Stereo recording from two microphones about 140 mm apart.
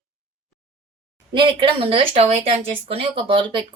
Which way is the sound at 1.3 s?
35° right (ahead or behind).